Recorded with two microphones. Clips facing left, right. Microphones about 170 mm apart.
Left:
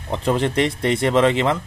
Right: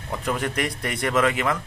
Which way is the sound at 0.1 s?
25° left (ahead or behind).